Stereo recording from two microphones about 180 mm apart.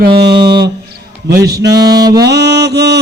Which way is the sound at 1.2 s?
70° right (ahead or behind).